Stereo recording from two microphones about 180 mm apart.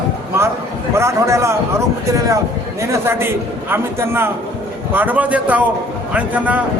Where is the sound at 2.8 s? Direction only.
15° right (ahead or behind).